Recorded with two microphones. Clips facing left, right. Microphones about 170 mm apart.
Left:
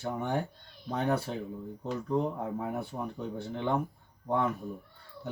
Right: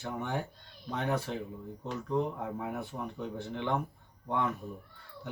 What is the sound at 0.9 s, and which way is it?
Speech, 35° left (ahead or behind).